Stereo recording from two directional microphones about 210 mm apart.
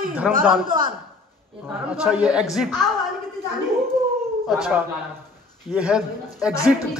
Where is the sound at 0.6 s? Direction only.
40° right (ahead or behind).